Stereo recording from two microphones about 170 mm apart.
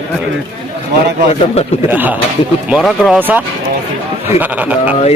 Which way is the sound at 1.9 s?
10° right (ahead or behind).